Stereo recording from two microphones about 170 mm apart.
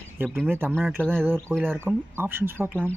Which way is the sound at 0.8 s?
5° left (ahead or behind).